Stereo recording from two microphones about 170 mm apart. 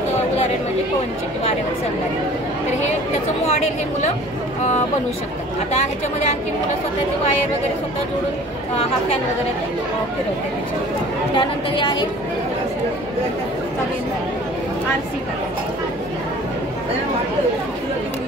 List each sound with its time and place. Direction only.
3.4 s speech: 40° left (ahead or behind)
11.3 s a woman's voice: 25° left (ahead or behind)